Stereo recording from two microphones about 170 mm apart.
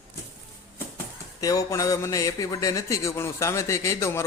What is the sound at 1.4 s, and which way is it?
Speech, 20° left (ahead or behind).